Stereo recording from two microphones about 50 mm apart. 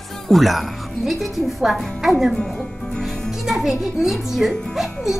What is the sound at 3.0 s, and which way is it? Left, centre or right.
Music, centre.